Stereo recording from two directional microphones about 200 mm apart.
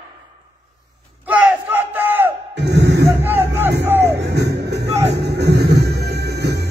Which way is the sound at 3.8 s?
10° right (ahead or behind).